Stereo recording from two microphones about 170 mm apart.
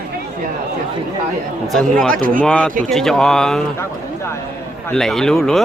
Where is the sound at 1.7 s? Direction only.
Centre (ahead or behind).